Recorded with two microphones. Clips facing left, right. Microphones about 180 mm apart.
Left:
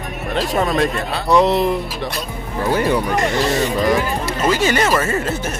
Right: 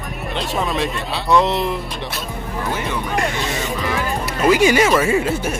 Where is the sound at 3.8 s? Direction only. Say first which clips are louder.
Left 7 dB; 35° left (ahead or behind).